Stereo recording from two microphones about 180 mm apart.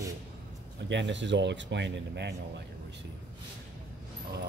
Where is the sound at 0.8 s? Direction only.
85° right.